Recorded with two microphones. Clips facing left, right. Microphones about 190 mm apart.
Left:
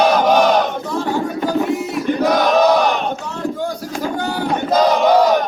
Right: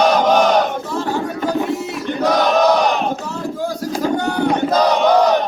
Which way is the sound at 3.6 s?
Centre (ahead or behind).